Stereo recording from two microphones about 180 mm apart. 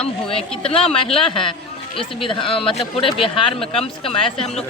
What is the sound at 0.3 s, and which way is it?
Speech, 30° left (ahead or behind).